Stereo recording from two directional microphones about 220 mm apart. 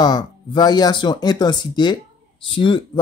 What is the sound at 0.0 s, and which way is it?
Speech, 20° left (ahead or behind).